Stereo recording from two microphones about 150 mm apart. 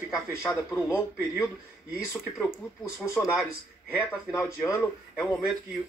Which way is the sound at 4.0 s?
15° left (ahead or behind).